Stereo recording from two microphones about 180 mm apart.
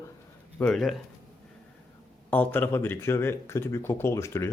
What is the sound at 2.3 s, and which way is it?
Speech, 10° left (ahead or behind).